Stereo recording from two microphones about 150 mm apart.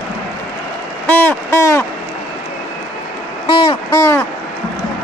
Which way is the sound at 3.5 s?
35° left (ahead or behind).